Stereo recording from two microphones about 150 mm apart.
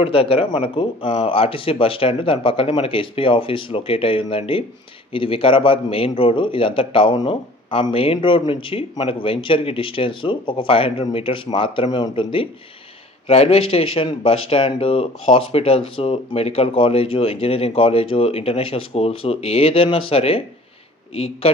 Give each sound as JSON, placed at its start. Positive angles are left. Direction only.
{"t": 0.0, "sound": "a man's voice", "side_deg": 35}